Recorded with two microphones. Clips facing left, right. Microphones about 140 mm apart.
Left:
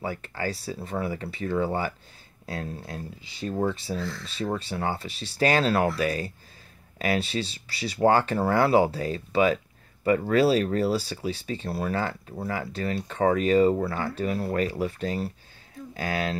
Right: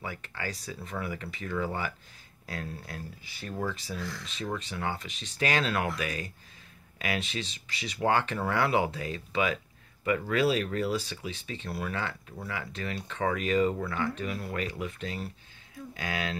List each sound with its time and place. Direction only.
0.0 s speech: 35° left (ahead or behind)
4.0 s speech: 15° right (ahead or behind)
4.4 s speech: 35° left (ahead or behind)